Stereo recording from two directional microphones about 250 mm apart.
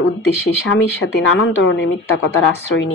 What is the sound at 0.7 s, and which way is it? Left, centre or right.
Speech, left.